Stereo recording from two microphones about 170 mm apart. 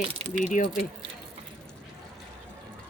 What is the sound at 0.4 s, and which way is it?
Speech, 50° left (ahead or behind).